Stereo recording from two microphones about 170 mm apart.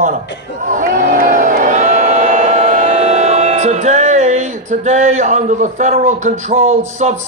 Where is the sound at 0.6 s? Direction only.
50° right (ahead or behind).